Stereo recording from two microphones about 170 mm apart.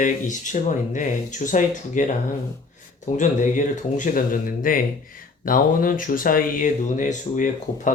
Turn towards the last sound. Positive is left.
turn(degrees=45)  # may be behind; listen again after turning